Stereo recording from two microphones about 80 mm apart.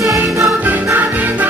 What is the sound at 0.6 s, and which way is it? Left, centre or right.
Music, right.